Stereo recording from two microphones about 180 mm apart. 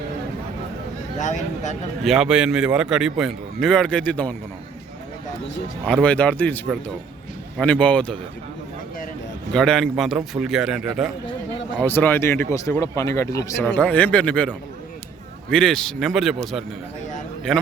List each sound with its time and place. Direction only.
1.2 s speech: 40° left (ahead or behind)
2.0 s speech: 5° right (ahead or behind)
5.8 s speech: 5° left (ahead or behind)
7.6 s speech: 5° left (ahead or behind)
9.5 s speech: 5° left (ahead or behind)
11.8 s speech: 10° left (ahead or behind)